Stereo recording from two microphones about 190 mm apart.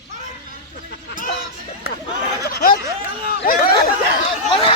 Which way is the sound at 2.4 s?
50° left (ahead or behind).